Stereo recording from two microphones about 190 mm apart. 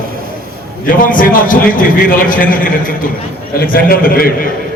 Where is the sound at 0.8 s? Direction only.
45° left (ahead or behind).